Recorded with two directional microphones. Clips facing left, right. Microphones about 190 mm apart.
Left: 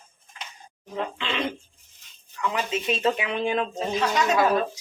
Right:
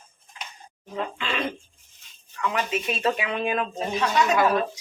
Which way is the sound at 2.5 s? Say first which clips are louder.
Left 1 dB; 20° left (ahead or behind).